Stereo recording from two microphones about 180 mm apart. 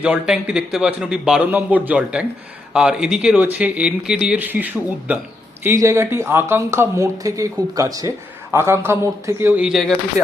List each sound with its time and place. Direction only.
0.0 s a man's voice: 5° right (ahead or behind)